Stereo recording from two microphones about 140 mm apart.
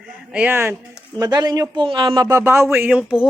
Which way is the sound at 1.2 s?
30° right (ahead or behind).